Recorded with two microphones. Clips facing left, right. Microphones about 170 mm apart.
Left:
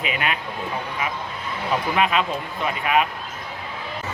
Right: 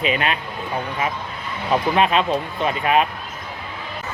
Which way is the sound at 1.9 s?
30° right (ahead or behind).